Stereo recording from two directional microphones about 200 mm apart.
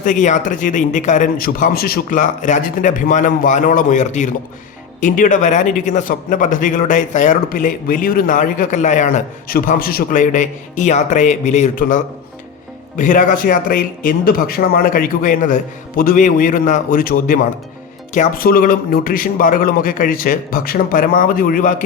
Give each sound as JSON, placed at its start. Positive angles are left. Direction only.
{"t": 0.0, "sound": "a man's voice", "side_deg": 40}